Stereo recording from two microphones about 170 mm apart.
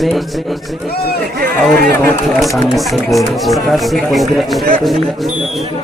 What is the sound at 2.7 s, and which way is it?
A man's voice, centre (ahead or behind).